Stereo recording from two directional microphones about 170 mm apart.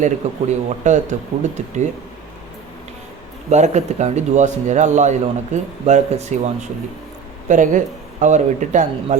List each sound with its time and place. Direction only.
0.0 s speech: 45° right (ahead or behind)
3.5 s speech: 40° right (ahead or behind)